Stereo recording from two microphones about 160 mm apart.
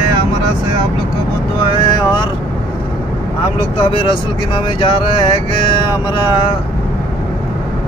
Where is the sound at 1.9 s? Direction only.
30° left (ahead or behind).